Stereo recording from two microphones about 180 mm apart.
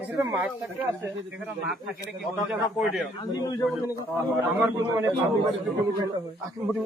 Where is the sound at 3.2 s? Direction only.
20° left (ahead or behind).